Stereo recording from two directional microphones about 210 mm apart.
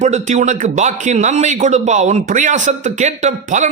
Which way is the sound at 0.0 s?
35° right (ahead or behind).